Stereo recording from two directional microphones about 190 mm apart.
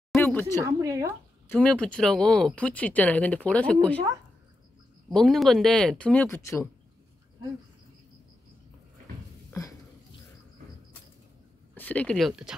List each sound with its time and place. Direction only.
0.1 s a sound: 10° left (ahead or behind)
0.6 s speech: 15° right (ahead or behind)
1.5 s speech: 5° left (ahead or behind)
5.1 s speech: centre (ahead or behind)
9.5 s a sound: 15° left (ahead or behind)
11.7 s speech: 10° left (ahead or behind)